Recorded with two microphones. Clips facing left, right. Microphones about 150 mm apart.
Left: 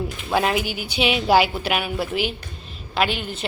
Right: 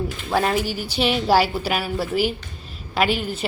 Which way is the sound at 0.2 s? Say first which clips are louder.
Even; centre (ahead or behind).